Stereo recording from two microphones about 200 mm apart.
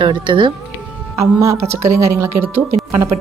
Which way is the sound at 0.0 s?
25° right (ahead or behind).